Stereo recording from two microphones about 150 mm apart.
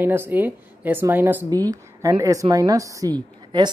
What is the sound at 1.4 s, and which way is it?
A woman's voice, 25° right (ahead or behind).